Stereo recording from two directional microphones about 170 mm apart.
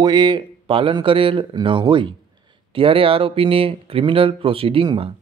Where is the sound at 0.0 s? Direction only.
25° right (ahead or behind).